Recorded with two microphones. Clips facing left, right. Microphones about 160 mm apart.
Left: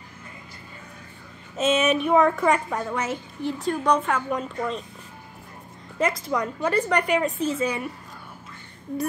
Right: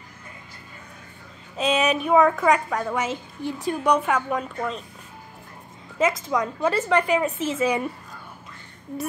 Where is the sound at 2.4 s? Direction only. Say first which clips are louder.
Right 1 dB; 5° left (ahead or behind).